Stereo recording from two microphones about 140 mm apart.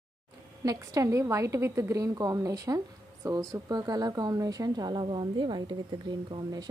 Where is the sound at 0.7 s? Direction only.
25° right (ahead or behind).